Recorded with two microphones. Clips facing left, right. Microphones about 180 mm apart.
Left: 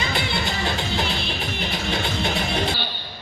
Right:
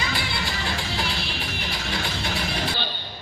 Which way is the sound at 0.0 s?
20° left (ahead or behind).